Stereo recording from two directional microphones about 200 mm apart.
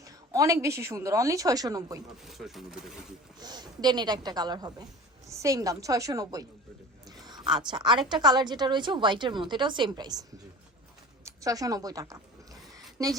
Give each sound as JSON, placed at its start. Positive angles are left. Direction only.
{"t": 0.0, "sound": "speech", "side_deg": -15}
{"t": 2.2, "sound": "speech", "side_deg": 0}
{"t": 3.4, "sound": "a woman's voice", "side_deg": -20}
{"t": 11.3, "sound": "speech", "side_deg": -15}
{"t": 12.7, "sound": "a sound", "side_deg": -15}